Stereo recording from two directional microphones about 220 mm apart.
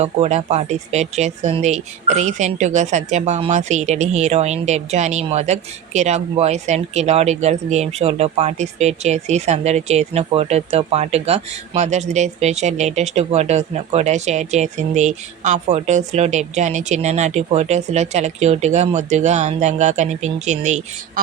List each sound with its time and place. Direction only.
0.0 s speech: 30° right (ahead or behind)